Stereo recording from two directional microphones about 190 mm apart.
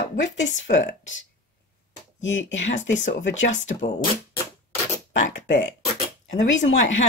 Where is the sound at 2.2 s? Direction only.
80° left.